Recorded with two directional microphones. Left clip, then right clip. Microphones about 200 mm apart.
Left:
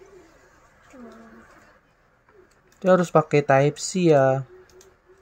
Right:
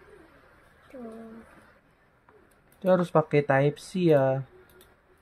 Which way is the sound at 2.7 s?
15° left (ahead or behind).